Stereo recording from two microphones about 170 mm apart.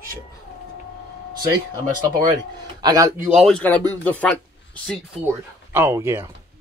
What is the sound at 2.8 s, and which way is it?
Speech, 20° right (ahead or behind).